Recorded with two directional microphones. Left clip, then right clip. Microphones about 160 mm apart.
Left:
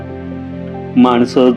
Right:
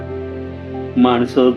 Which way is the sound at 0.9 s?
40° left (ahead or behind).